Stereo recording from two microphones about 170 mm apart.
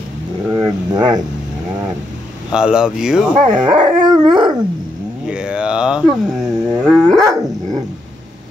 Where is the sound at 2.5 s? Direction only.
5° right (ahead or behind).